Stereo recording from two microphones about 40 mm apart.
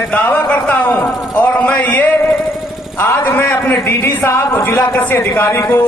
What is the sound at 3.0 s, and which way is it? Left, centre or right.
Speech, left.